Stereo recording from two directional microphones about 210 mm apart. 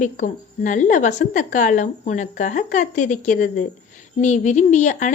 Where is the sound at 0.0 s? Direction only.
35° left (ahead or behind).